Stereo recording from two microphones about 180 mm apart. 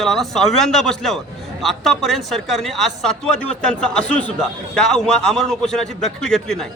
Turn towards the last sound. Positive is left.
turn(degrees=5)  # may be behind; listen again after turning